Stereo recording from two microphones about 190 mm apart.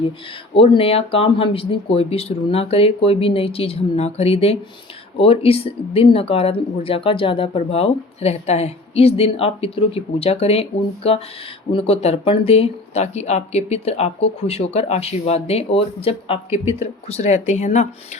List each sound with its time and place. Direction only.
0.5 s speech: 30° left (ahead or behind)